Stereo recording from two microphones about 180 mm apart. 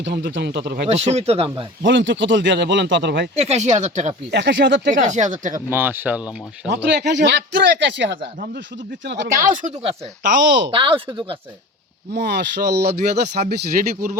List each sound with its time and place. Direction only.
0.0 s speech: 70° right (ahead or behind)
0.9 s speech: 35° right (ahead or behind)
1.8 s speech: 90° right
3.3 s speech: 35° right (ahead or behind)
4.3 s speech: 75° right (ahead or behind)
4.9 s speech: 40° right (ahead or behind)
5.5 s speech: 10° right (ahead or behind)
6.7 s speech: 70° right (ahead or behind)
9.4 s speech: 45° right (ahead or behind)
10.7 s speech: 30° right (ahead or behind)
12.1 s speech: 65° right (ahead or behind)
13.5 s speech: 55° right (ahead or behind)